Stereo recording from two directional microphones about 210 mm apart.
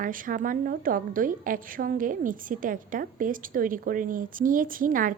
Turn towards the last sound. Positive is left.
turn(degrees=-40)  # may be behind; listen again after turning